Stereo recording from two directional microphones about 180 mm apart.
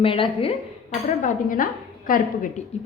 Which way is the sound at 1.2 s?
50° left (ahead or behind).